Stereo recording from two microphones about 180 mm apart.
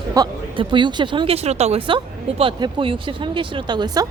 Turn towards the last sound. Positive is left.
turn(degrees=-25)  # may be behind; listen again after turning